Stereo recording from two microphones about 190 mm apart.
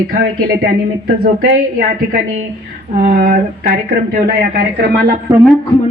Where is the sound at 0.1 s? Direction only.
50° right (ahead or behind).